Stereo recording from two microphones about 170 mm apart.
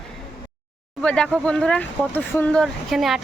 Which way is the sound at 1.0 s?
5° left (ahead or behind).